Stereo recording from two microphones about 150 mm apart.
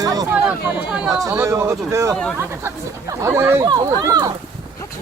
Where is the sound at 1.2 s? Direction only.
20° right (ahead or behind).